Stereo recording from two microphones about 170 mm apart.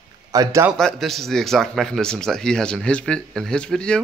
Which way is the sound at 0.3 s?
20° right (ahead or behind).